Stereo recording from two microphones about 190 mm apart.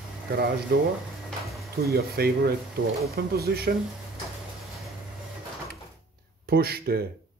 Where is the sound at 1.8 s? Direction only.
55° right (ahead or behind).